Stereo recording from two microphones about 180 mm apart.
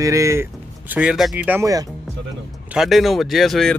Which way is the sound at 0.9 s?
5° right (ahead or behind).